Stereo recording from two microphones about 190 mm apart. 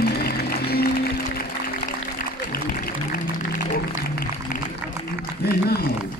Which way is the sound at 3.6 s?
55° left (ahead or behind).